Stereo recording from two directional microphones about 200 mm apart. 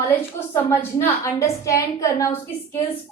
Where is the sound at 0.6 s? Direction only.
15° left (ahead or behind).